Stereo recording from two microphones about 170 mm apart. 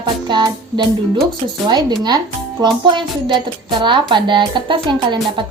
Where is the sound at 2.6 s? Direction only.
30° right (ahead or behind).